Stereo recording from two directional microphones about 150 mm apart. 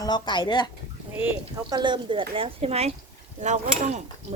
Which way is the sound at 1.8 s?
30° right (ahead or behind).